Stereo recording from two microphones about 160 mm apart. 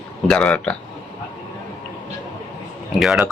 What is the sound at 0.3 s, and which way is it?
Speech, 5° left (ahead or behind).